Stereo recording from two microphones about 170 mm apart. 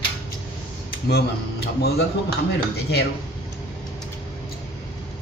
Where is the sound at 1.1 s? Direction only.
70° left (ahead or behind).